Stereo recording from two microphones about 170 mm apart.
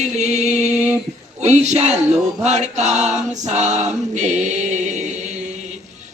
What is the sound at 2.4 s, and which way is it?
Male singing, 45° right (ahead or behind).